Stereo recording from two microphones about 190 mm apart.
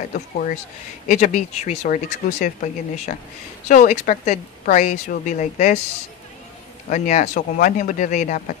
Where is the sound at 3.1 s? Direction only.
45° left (ahead or behind).